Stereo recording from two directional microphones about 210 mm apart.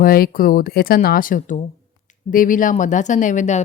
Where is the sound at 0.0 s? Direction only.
45° left (ahead or behind).